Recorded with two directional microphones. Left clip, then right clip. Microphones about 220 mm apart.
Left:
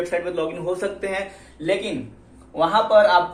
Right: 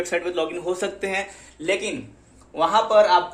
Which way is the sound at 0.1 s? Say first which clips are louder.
Even; 50° right (ahead or behind).